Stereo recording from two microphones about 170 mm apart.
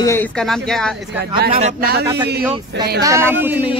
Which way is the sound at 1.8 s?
65° right (ahead or behind).